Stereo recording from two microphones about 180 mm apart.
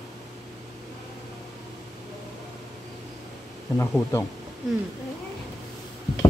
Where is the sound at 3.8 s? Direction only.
15° left (ahead or behind).